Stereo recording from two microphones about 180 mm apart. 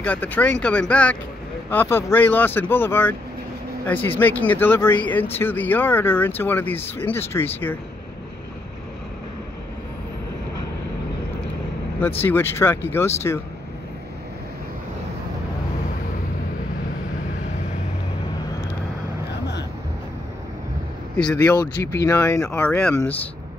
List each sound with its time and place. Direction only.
0.0 s speech: 10° left (ahead or behind)
12.2 s speech: 10° left (ahead or behind)
21.9 s speech: 20° left (ahead or behind)